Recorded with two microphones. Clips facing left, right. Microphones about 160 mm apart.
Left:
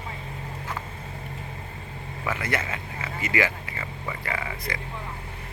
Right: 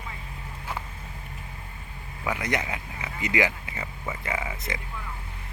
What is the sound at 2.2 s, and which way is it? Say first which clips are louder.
Speech: even; 15° right (ahead or behind).